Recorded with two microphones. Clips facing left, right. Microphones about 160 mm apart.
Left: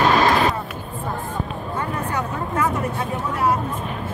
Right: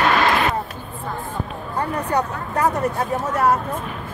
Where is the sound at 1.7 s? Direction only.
40° right (ahead or behind).